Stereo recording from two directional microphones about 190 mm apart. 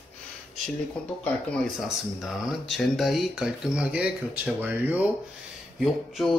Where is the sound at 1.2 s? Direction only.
Centre (ahead or behind).